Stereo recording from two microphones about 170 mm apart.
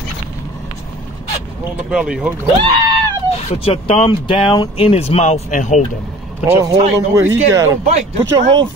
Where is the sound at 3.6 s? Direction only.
35° left (ahead or behind).